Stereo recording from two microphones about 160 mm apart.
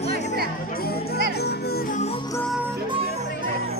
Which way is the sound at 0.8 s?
85° left.